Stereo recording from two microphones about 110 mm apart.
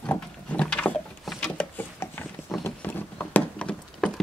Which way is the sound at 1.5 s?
15° left (ahead or behind).